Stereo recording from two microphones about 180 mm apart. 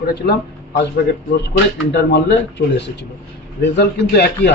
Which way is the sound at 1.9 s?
70° left (ahead or behind).